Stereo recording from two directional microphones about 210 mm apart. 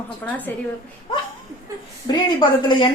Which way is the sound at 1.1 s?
25° left (ahead or behind).